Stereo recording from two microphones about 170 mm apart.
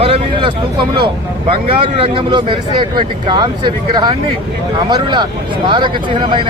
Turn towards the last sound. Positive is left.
turn(degrees=-30)  # may be behind; listen again after turning